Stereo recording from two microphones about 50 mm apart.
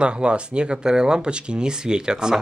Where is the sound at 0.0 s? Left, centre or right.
Centre.